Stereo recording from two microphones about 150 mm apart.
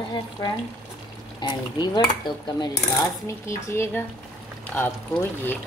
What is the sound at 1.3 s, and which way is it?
Speech, 30° left (ahead or behind).